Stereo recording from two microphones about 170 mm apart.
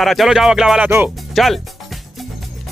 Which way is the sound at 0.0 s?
Centre (ahead or behind).